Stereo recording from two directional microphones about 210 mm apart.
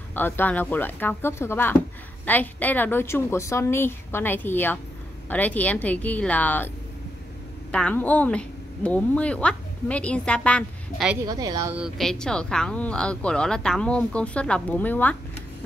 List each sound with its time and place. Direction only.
0.1 s a woman's voice: 10° left (ahead or behind)
7.7 s a woman's voice: 5° left (ahead or behind)
11.2 s speech: 15° right (ahead or behind)
11.7 s speech: centre (ahead or behind)